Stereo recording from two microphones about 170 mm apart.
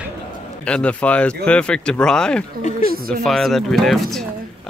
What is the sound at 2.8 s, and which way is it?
Speech, 60° right (ahead or behind).